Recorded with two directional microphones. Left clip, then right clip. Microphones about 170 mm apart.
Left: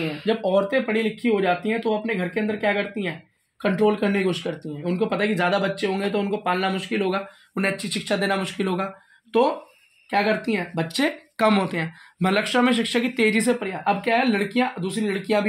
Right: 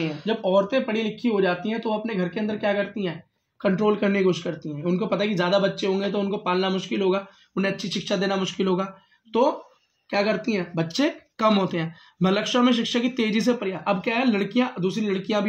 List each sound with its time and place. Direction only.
0.2 s speech: 30° left (ahead or behind)
10.0 s speech: 25° left (ahead or behind)